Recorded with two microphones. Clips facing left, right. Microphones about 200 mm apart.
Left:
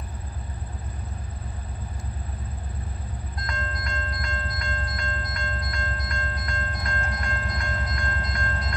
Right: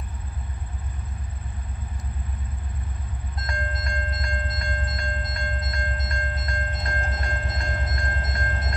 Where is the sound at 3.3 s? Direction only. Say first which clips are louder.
Right 2 dB; 25° right (ahead or behind).